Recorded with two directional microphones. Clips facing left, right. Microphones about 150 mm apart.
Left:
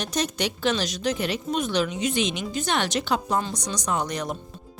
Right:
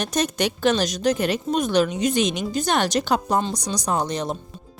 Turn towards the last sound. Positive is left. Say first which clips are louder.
# right 3 dB
turn(degrees=-30)  # may be behind; listen again after turning